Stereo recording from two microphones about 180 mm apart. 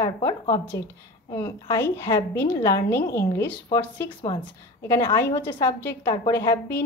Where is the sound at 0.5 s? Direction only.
10° left (ahead or behind).